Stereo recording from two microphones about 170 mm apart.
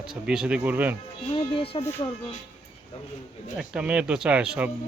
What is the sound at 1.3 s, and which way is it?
Speech, 30° left (ahead or behind).